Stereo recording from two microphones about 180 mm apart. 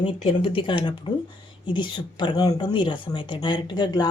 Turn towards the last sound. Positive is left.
turn(degrees=20)  # may be behind; listen again after turning